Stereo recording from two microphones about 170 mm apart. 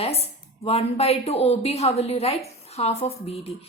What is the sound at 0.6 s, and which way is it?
Speech, 35° left (ahead or behind).